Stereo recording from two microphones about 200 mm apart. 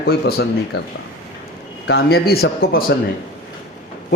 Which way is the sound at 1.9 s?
50° left (ahead or behind).